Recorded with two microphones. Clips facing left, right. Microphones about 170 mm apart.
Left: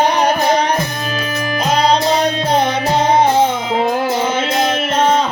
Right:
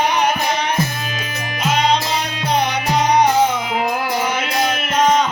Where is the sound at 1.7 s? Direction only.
35° left (ahead or behind).